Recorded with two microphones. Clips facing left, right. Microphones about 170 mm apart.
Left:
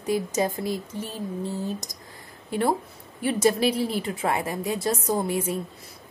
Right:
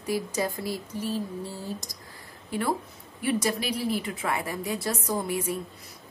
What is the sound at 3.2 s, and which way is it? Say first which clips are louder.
A woman's voice: left 5 dB; 25° left (ahead or behind).